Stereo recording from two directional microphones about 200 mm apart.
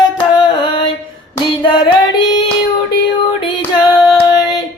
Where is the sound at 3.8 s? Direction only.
20° left (ahead or behind).